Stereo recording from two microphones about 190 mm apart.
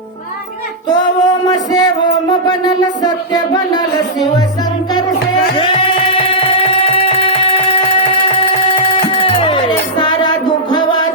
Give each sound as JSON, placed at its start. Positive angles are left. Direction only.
{"t": 0.9, "sound": "music", "side_deg": 20}
{"t": 5.5, "sound": "music", "side_deg": 30}
{"t": 8.4, "sound": "music", "side_deg": 30}